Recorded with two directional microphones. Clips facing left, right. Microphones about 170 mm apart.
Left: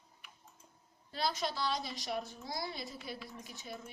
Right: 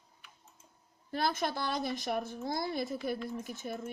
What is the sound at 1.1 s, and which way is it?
A woman's voice, 55° right (ahead or behind).